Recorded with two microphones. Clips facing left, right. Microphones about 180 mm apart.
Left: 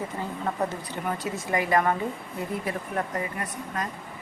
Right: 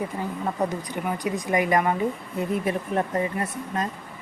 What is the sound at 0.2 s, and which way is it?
A woman's voice, 15° right (ahead or behind).